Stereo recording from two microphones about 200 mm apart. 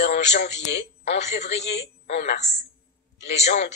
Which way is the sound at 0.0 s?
35° left (ahead or behind).